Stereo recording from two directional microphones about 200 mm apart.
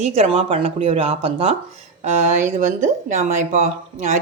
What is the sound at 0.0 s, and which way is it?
Speech, 30° right (ahead or behind).